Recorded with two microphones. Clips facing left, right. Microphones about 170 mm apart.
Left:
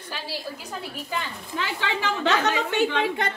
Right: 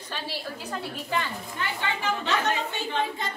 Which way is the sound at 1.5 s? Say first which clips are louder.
Left 4 dB; 90° left.